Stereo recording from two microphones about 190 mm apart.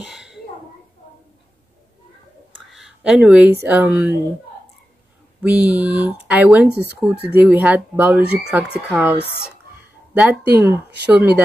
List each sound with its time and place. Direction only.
0.0 s a sound: 5° right (ahead or behind)
2.7 s a sound: centre (ahead or behind)
3.6 s speech: 10° right (ahead or behind)
5.4 s speech: 5° right (ahead or behind)
6.7 s speech: 60° right (ahead or behind)
7.3 s speech: 5° right (ahead or behind)